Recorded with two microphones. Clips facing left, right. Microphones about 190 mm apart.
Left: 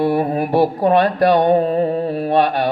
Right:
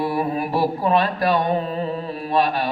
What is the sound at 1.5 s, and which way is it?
Carnatic music, 50° left (ahead or behind).